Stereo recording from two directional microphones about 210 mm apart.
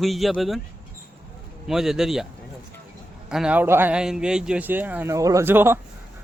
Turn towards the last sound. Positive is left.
turn(degrees=-10)  # may be behind; listen again after turning